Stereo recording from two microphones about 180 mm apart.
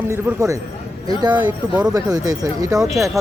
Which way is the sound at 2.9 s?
Centre (ahead or behind).